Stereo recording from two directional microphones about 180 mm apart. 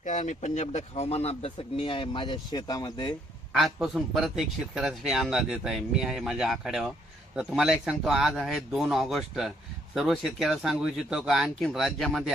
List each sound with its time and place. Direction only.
0.0 s speech: 40° left (ahead or behind); by 3.2 s 25° left (ahead or behind)
3.6 s speech: centre (ahead or behind)